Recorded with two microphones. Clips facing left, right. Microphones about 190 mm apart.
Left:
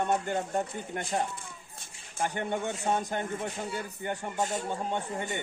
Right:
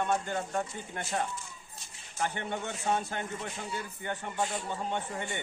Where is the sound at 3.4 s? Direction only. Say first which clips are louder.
Left 3 dB; 55° left (ahead or behind).